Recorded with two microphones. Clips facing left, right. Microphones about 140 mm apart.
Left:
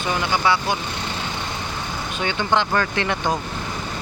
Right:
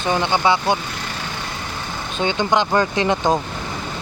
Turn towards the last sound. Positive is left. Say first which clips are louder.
# right 5 dB
turn(degrees=-20)  # may be behind; listen again after turning